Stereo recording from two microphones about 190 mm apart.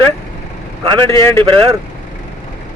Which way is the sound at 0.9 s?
25° right (ahead or behind).